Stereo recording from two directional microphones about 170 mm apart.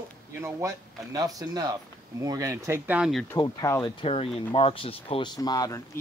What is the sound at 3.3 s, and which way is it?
Speech, 20° left (ahead or behind).